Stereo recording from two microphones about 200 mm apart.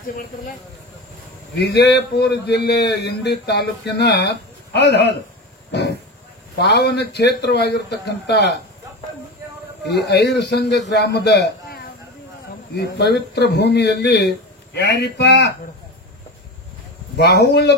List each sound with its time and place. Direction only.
1.6 s speech: 55° left (ahead or behind)
5.7 s sheep: 55° left (ahead or behind)
6.6 s speech: 55° left (ahead or behind)
9.8 s speech: 55° left (ahead or behind)
17.2 s speech: 55° left (ahead or behind)